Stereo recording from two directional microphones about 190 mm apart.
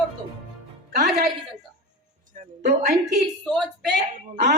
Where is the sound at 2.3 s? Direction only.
35° right (ahead or behind).